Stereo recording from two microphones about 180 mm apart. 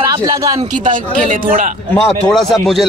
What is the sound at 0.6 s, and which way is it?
Speech, 45° right (ahead or behind).